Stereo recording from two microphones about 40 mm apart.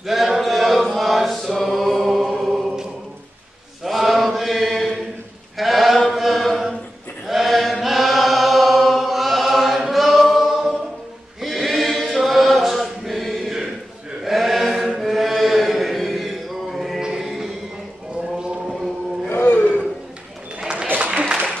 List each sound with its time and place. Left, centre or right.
0.0 s chant: centre
3.8 s chant: centre
11.4 s choir: centre
14.2 s chant: centre
17.0 s a sound: centre
19.2 s roar: left
21.0 s applause: right